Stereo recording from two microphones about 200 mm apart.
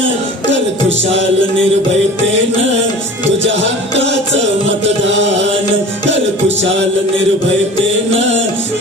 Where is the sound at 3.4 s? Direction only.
65° right (ahead or behind).